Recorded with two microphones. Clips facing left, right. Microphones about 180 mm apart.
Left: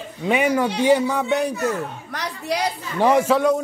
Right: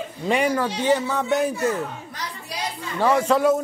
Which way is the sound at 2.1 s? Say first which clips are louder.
Left 8 dB; 75° left (ahead or behind).